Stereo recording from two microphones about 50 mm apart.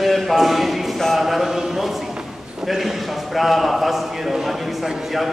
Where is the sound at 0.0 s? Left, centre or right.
Centre.